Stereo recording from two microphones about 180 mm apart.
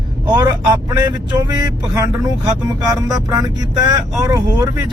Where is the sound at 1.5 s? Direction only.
20° right (ahead or behind).